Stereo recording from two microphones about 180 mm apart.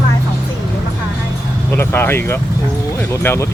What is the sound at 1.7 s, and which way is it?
Speech, 10° left (ahead or behind).